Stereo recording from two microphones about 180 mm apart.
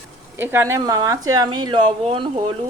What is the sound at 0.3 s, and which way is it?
Speech, 15° right (ahead or behind).